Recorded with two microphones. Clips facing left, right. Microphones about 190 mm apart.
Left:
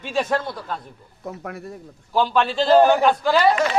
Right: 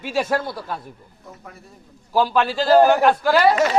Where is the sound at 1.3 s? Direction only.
75° left (ahead or behind).